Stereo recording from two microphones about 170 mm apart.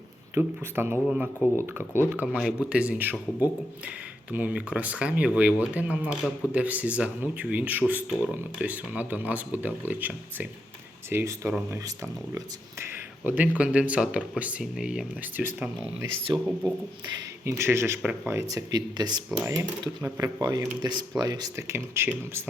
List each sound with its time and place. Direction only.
0.3 s speech: 15° right (ahead or behind)
16.3 s speech: 25° right (ahead or behind)